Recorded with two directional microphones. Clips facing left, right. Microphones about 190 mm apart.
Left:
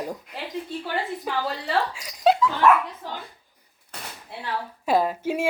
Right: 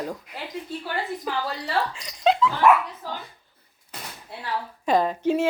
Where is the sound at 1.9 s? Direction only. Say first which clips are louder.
Left 2 dB; 5° left (ahead or behind).